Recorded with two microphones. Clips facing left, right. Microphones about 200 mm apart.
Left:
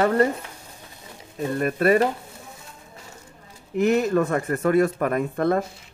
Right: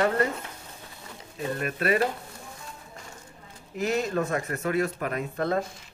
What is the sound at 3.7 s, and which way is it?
A man's voice, 60° left (ahead or behind).